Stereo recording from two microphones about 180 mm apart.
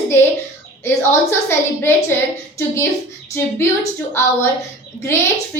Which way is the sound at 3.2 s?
15° left (ahead or behind).